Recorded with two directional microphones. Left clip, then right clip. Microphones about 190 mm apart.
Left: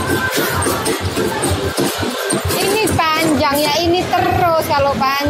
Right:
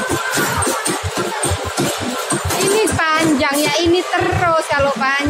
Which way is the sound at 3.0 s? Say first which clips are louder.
Even; 15° right (ahead or behind).